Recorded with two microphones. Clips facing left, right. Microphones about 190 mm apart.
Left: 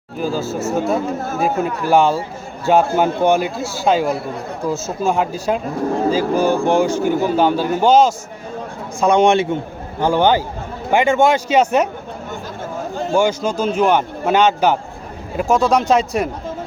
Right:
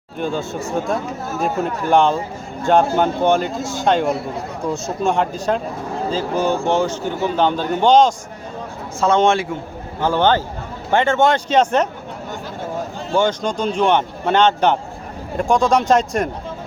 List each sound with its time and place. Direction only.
0.2 s a man's voice: 5° left (ahead or behind)
13.1 s a man's voice: 10° left (ahead or behind)